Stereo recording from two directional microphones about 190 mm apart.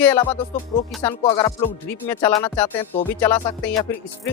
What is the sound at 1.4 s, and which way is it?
Music, 20° left (ahead or behind).